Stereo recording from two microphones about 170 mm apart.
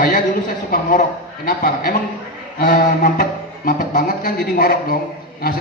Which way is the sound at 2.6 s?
55° left (ahead or behind).